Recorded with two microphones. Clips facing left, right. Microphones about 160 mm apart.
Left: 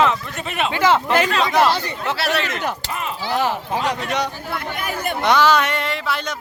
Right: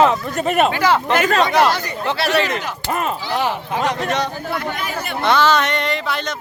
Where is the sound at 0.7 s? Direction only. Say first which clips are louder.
Even; 20° left (ahead or behind).